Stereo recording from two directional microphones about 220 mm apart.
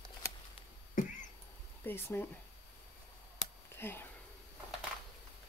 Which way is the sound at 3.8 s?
10° left (ahead or behind).